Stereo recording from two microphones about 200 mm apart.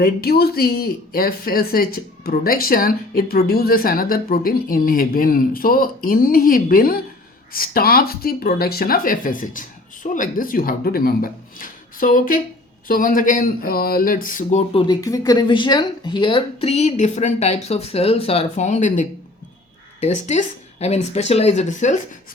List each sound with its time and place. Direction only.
0.0 s speech: 50° left (ahead or behind)
20.1 s speech: 35° left (ahead or behind)